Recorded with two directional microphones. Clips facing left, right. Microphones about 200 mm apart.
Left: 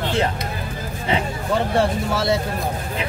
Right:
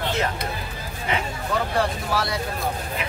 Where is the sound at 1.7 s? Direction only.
25° left (ahead or behind).